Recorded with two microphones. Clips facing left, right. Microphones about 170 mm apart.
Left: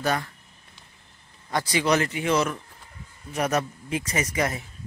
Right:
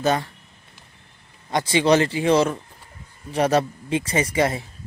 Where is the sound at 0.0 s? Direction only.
25° right (ahead or behind).